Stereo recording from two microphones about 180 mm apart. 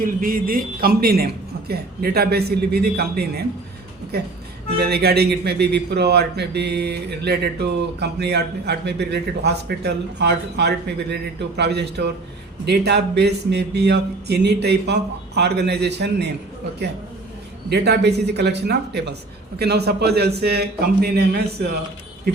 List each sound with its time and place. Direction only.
0.0 s a man's voice: 50° right (ahead or behind)
4.8 s a man's voice: 60° right (ahead or behind)
17.7 s a man's voice: 65° right (ahead or behind)